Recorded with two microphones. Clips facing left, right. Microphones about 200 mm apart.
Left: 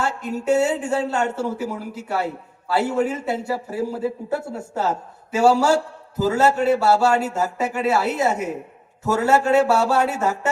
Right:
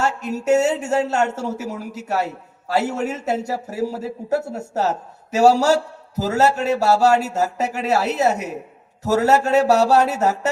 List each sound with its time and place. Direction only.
0.0 s speech: 40° right (ahead or behind)